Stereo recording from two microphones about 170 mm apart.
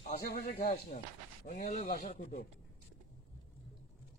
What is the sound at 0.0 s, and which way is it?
A man's voice, 55° left (ahead or behind).